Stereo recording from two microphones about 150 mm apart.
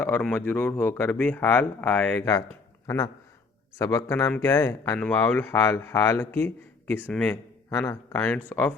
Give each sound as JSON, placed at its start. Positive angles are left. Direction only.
{"t": 0.0, "sound": "speech", "side_deg": 10}
{"t": 7.7, "sound": "speech", "side_deg": 20}